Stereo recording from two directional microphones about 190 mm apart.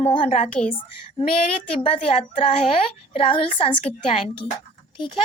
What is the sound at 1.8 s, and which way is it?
A woman's voice, 30° left (ahead or behind).